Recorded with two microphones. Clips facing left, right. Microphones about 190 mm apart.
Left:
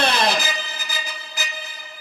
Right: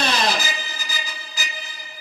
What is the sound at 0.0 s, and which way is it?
Music, 60° left (ahead or behind).